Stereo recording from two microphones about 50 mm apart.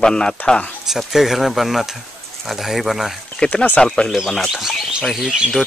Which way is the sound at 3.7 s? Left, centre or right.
Centre.